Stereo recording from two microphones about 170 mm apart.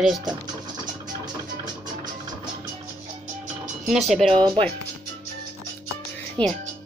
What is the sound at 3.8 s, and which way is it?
Speech, centre (ahead or behind).